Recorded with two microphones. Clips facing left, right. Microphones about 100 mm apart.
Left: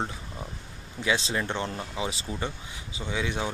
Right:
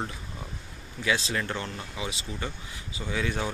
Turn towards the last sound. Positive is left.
turn(degrees=15)  # may be behind; listen again after turning